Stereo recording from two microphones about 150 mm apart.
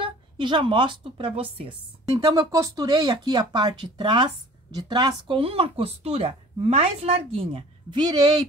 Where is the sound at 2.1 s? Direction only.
25° right (ahead or behind).